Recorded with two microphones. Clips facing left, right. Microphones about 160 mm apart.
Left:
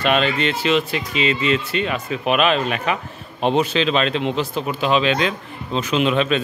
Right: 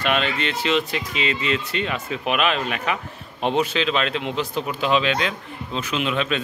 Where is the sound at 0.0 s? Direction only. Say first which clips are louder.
Left 4 dB; 20° left (ahead or behind).